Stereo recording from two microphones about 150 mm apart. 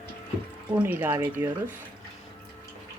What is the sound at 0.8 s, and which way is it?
Speech, 15° right (ahead or behind).